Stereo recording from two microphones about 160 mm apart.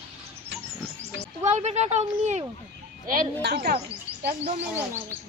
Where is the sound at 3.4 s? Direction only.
80° right.